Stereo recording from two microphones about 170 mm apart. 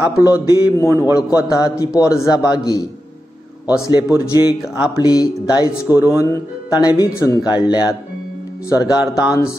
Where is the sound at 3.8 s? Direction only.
20° left (ahead or behind).